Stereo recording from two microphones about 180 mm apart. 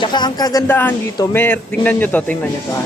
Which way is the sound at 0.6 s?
10° left (ahead or behind).